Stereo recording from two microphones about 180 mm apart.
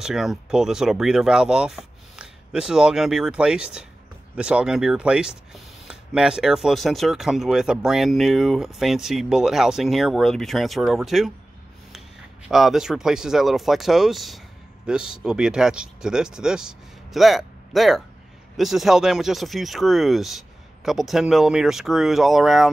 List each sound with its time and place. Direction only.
0.0 s speech: centre (ahead or behind)
12.4 s speech: centre (ahead or behind)